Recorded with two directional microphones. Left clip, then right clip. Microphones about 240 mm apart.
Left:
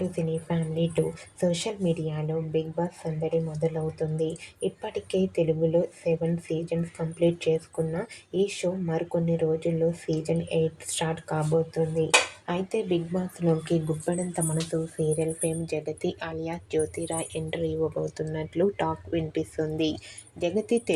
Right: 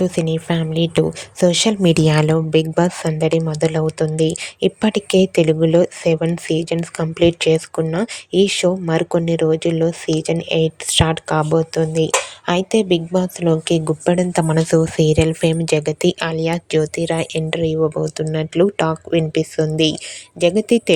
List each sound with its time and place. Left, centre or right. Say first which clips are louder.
0.0 s speech: right 11 dB; right